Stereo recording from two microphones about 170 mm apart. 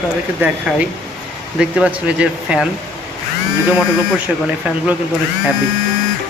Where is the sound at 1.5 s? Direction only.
5° right (ahead or behind).